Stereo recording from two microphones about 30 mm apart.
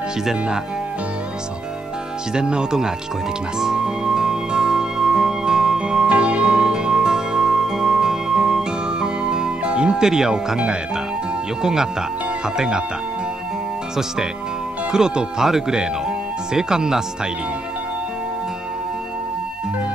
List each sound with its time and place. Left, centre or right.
0.2 s speech: centre
2.3 s speech: right
3.5 s music: centre
6.0 s music: right
9.9 s speech: centre
10.3 s speech: right
14.9 s speech: right
16.5 s speech: right